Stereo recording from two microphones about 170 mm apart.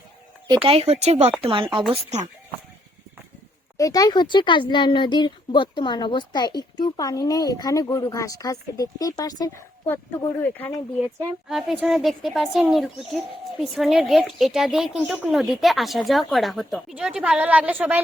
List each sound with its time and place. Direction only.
0.4 s speech: 30° right (ahead or behind)
1.9 s speech: 40° right (ahead or behind)
3.8 s speech: 20° left (ahead or behind)
11.4 s a woman's voice: 5° right (ahead or behind)